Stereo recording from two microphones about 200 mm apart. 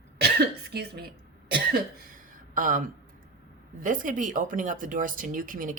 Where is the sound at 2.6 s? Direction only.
40° right (ahead or behind).